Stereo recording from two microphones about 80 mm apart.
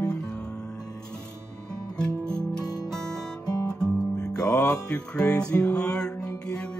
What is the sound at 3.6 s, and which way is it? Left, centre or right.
Music, centre.